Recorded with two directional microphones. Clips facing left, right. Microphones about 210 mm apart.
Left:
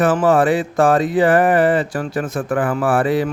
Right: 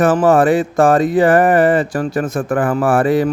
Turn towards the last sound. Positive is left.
turn(degrees=-45)  # may be behind; listen again after turning